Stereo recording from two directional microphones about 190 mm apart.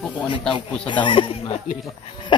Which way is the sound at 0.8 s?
25° left (ahead or behind).